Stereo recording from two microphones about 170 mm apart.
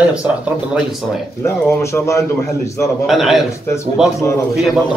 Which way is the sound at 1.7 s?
15° left (ahead or behind).